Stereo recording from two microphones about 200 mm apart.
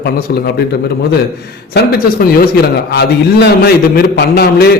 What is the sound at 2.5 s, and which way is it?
A man's voice, 55° left (ahead or behind).